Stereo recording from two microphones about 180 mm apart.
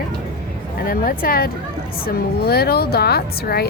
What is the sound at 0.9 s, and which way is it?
A woman's voice, 55° left (ahead or behind).